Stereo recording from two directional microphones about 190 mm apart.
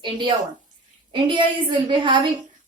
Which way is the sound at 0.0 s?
25° right (ahead or behind).